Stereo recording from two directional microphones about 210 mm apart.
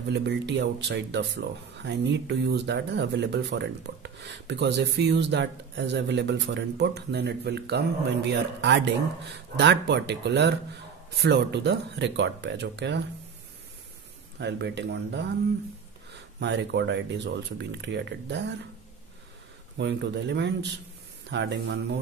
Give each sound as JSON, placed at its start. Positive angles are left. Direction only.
{"t": 0.1, "sound": "speech", "side_deg": -55}
{"t": 14.4, "sound": "speech", "side_deg": -55}
{"t": 16.3, "sound": "speech", "side_deg": -55}
{"t": 19.8, "sound": "speech", "side_deg": -55}